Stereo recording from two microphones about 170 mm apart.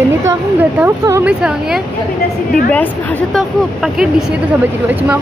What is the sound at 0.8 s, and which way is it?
Speech, 10° right (ahead or behind).